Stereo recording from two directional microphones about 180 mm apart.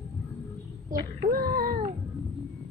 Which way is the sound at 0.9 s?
50° right (ahead or behind).